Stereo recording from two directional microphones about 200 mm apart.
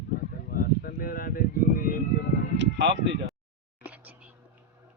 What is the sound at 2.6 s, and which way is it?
Speech, 60° right (ahead or behind).